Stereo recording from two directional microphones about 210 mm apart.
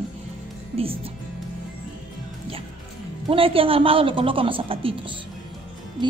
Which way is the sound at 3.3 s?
25° right (ahead or behind).